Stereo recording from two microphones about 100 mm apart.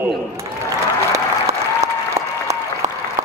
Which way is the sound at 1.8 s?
30° right (ahead or behind).